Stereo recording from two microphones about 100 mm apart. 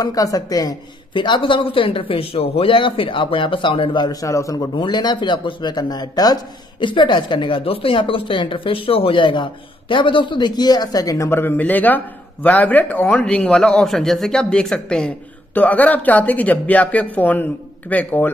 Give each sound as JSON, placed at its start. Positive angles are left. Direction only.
{"t": 0.0, "sound": "a woman's voice", "side_deg": 35}
{"t": 1.1, "sound": "speech", "side_deg": 50}
{"t": 4.7, "sound": "a man's voice", "side_deg": 50}